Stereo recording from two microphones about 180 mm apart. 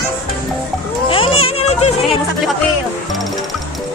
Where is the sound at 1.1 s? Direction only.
30° left (ahead or behind).